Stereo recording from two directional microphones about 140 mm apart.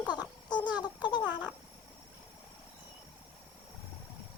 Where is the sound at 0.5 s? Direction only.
30° left (ahead or behind).